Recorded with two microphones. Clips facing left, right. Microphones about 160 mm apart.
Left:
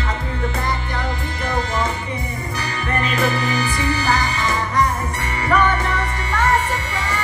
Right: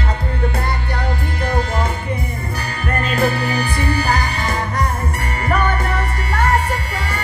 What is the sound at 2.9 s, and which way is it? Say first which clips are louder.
Music: right 2 dB; 60° right (ahead or behind).